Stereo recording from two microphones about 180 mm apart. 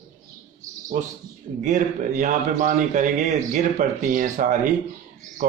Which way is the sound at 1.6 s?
45° right (ahead or behind).